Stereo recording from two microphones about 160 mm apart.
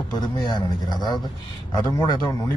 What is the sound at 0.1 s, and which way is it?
A man's voice, 25° left (ahead or behind).